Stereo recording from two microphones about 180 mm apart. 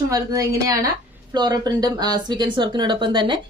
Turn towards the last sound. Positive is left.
turn(degrees=-25)  # may be behind; listen again after turning